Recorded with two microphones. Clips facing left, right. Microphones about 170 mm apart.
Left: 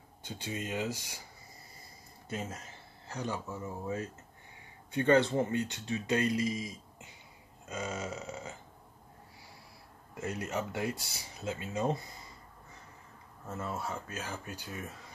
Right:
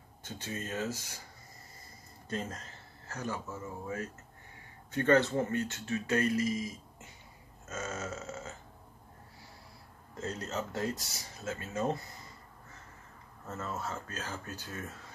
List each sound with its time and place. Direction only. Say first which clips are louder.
0.2 s speech: left 1 dB; 15° left (ahead or behind)
2.2 s speech: right 1 dB; 10° left (ahead or behind)
10.1 s speech: left 1 dB; 10° left (ahead or behind)
13.5 s speech: left 1 dB; 10° left (ahead or behind)